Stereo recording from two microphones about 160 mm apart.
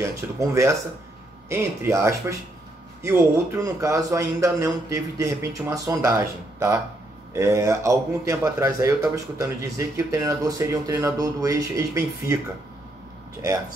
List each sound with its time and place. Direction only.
0.0 s speech: 20° right (ahead or behind)